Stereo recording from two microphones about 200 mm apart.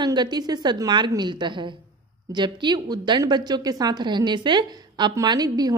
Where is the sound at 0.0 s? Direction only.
20° right (ahead or behind).